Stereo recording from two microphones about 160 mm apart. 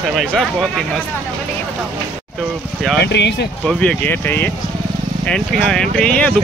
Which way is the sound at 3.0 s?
90° left.